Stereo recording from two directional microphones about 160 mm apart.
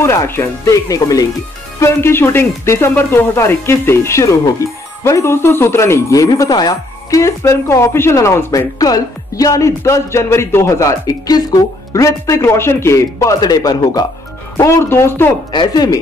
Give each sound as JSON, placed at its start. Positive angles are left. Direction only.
{"t": 0.0, "sound": "speech", "side_deg": 15}
{"t": 15.5, "sound": "speech", "side_deg": 25}